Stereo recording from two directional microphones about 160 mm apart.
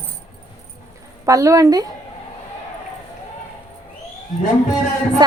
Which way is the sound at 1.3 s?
20° right (ahead or behind).